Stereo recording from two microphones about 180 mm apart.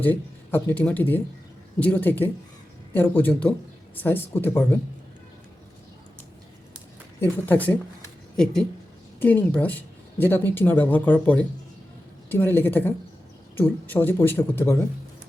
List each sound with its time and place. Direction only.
0.0 s speech: 10° left (ahead or behind)
7.2 s speech: 10° left (ahead or behind)
9.2 s speech: 10° left (ahead or behind)